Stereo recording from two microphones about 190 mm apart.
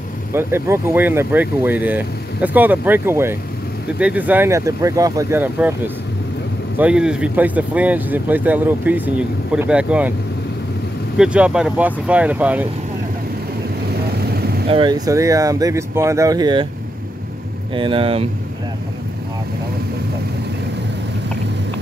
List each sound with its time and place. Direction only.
0.3 s speech: 10° right (ahead or behind)
6.8 s speech: 5° right (ahead or behind)
11.1 s speech: 5° right (ahead or behind)
14.1 s vehicle: 55° right (ahead or behind)
14.7 s speech: 25° right (ahead or behind)
17.7 s speech: 30° right (ahead or behind)